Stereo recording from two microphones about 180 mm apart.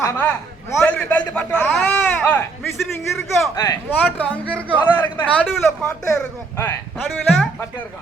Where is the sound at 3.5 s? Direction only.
15° left (ahead or behind).